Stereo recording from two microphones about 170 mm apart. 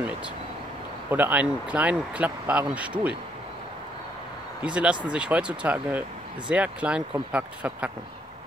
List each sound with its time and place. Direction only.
1.1 s speech: 10° right (ahead or behind)
4.6 s speech: 5° right (ahead or behind)